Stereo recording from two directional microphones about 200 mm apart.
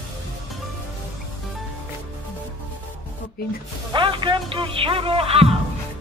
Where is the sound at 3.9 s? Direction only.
25° right (ahead or behind).